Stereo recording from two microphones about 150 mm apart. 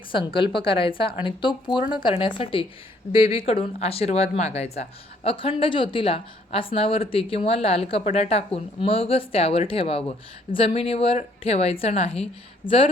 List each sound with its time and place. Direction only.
0.3 s speech: 35° left (ahead or behind)